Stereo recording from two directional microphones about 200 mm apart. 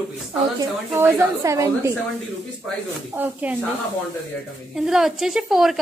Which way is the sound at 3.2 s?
5° right (ahead or behind).